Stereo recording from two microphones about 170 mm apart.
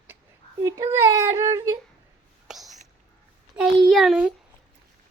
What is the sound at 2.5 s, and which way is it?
Whispering, centre (ahead or behind).